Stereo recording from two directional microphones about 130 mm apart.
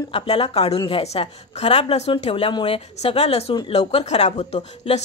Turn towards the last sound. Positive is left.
turn(degrees=55)  # may be behind; listen again after turning